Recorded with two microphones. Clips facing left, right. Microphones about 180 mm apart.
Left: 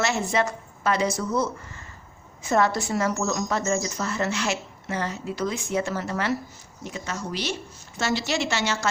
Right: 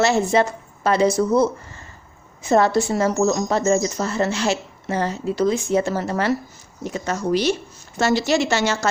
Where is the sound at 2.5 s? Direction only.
30° right (ahead or behind).